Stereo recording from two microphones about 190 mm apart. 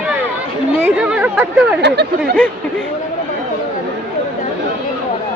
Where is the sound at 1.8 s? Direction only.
60° right (ahead or behind).